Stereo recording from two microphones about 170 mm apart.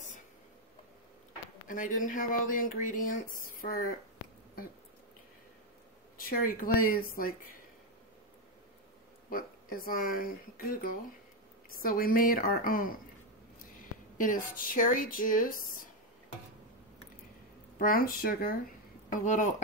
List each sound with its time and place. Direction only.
1.7 s speech: 50° left (ahead or behind)
6.1 s speech: 60° left (ahead or behind)
9.3 s speech: 55° left (ahead or behind)
17.7 s speech: 60° left (ahead or behind)